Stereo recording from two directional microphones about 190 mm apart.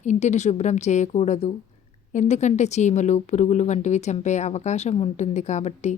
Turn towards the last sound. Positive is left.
turn(degrees=35)  # may be behind; listen again after turning